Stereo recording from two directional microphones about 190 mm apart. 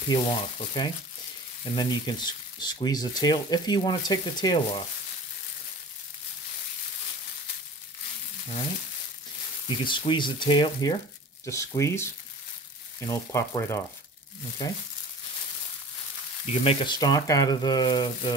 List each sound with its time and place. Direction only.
0.1 s speech: 25° left (ahead or behind)
9.7 s speech: 25° left (ahead or behind)
16.6 s speech: 25° left (ahead or behind)